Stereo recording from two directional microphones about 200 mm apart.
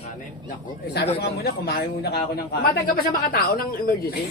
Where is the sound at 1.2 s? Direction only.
50° left (ahead or behind).